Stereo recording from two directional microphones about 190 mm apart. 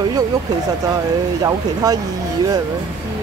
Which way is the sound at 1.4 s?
20° right (ahead or behind).